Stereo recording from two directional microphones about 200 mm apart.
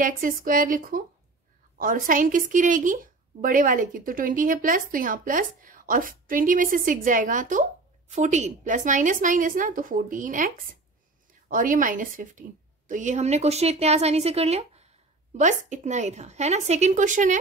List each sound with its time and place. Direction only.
0.0 s a woman's voice: 45° right (ahead or behind)